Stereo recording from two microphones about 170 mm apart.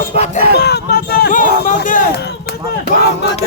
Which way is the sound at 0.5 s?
75° left (ahead or behind).